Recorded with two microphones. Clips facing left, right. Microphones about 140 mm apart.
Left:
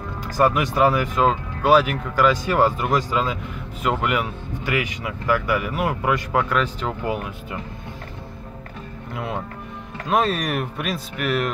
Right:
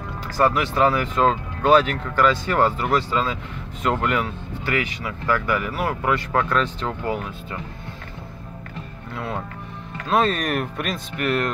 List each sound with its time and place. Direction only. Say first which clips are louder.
0.3 s speech: left 1 dB; 15° left (ahead or behind)
9.1 s speech: left 1 dB; 15° left (ahead or behind)